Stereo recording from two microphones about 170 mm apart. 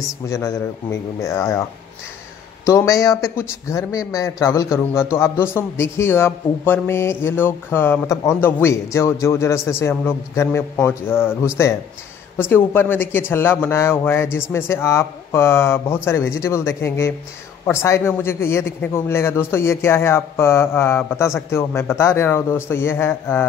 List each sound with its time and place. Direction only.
0.3 s a man's voice: 15° left (ahead or behind)
2.6 s a man's voice: 20° left (ahead or behind)
12.4 s a man's voice: 10° left (ahead or behind)